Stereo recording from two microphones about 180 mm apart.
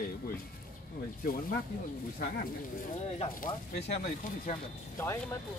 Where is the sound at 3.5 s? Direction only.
25° left (ahead or behind).